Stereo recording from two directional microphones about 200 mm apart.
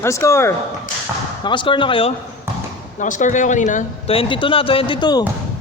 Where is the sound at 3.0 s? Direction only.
40° left (ahead or behind); by 5.2 s 20° left (ahead or behind).